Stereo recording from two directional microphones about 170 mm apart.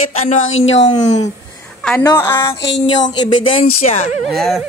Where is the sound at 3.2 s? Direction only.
35° left (ahead or behind).